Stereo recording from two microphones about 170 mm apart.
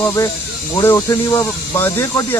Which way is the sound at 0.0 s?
20° left (ahead or behind).